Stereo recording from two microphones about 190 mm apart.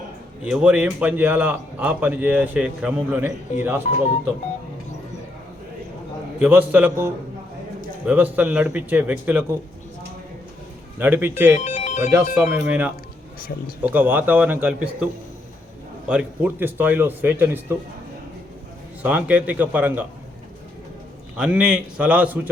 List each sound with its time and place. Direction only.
0.5 s a man's voice: 5° right (ahead or behind)
6.4 s a man's voice: 10° right (ahead or behind)
11.0 s a man's voice: 10° right (ahead or behind)
11.6 s ringtone: 35° left (ahead or behind)
12.1 s a man's voice: 10° right (ahead or behind)
19.0 s a man's voice: 5° right (ahead or behind)
21.3 s a man's voice: 5° right (ahead or behind)